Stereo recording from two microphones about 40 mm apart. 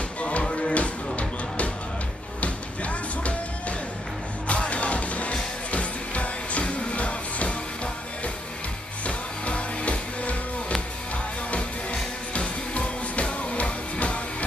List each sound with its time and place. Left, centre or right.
0.2 s music: left
11.5 s music: left